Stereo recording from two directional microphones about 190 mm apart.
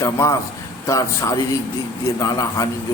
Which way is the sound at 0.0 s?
15° left (ahead or behind).